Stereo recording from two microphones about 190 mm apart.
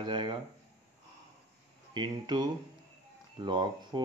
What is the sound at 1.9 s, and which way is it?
Speech, 25° right (ahead or behind).